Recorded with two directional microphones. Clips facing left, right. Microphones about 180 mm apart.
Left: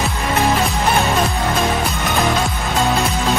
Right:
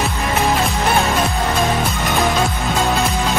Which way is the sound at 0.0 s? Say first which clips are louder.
Even; centre (ahead or behind).